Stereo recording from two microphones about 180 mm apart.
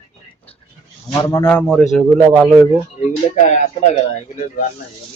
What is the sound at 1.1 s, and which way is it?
Speech, 15° left (ahead or behind).